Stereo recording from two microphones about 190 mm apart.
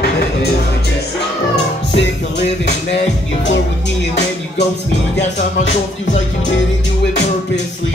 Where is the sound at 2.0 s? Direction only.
65° left (ahead or behind).